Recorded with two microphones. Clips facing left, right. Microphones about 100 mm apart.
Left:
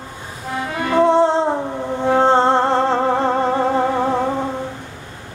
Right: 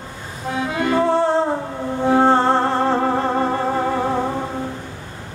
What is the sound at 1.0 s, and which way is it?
Music, 20° left (ahead or behind).